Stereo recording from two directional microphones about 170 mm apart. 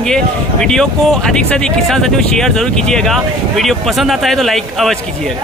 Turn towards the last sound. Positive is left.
turn(degrees=0)  # may be behind; listen again after turning